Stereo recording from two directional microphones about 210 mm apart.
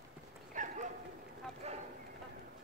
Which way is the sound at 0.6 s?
35° right (ahead or behind).